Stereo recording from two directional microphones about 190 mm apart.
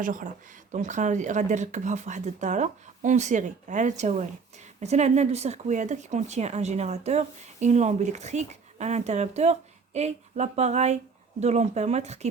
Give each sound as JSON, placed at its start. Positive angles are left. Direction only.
{"t": 0.0, "sound": "speech", "side_deg": -45}